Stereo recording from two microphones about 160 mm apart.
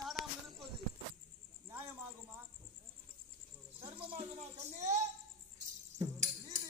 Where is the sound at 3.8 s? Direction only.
30° right (ahead or behind).